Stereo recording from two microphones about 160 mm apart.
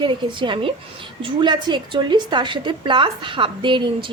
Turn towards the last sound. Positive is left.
turn(degrees=-30)  # may be behind; listen again after turning